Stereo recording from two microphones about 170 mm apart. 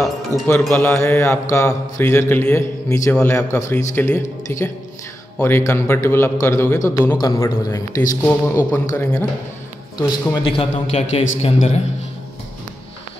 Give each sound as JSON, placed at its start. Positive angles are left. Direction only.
{"t": 0.5, "sound": "mantra", "side_deg": 10}
{"t": 6.9, "sound": "a man's voice", "side_deg": 20}
{"t": 8.2, "sound": "mantra", "side_deg": 10}
{"t": 8.7, "sound": "a man's voice", "side_deg": 20}
{"t": 9.9, "sound": "a man's voice", "side_deg": 30}